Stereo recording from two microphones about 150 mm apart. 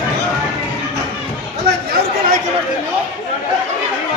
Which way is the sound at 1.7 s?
90° right.